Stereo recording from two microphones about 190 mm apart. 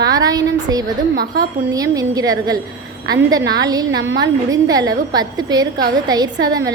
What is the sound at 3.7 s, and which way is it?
A woman's voice, 20° right (ahead or behind).